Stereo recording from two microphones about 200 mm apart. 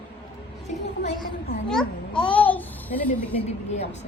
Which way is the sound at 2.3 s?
10° left (ahead or behind).